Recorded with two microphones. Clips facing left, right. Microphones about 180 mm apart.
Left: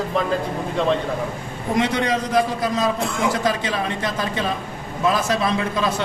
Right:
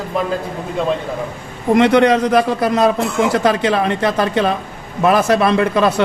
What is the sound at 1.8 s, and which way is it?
A man's voice, 65° right (ahead or behind).